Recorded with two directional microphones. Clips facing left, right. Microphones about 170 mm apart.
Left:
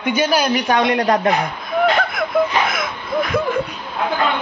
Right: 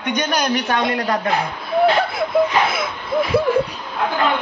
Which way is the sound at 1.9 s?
25° right (ahead or behind).